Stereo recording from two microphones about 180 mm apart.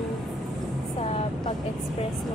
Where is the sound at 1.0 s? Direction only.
35° left (ahead or behind).